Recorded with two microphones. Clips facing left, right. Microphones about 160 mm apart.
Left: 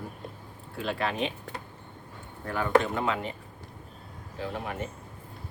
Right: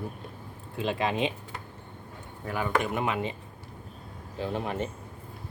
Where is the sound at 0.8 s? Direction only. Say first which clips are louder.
Right 2 dB; 15° right (ahead or behind).